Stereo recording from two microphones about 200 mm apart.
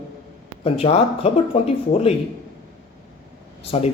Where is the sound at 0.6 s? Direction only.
30° left (ahead or behind).